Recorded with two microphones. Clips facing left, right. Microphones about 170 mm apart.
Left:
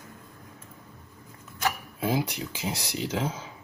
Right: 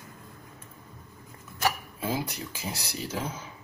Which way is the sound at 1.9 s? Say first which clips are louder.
Left 4 dB; 15° left (ahead or behind).